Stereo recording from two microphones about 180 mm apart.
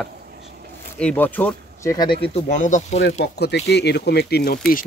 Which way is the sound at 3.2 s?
65° left (ahead or behind).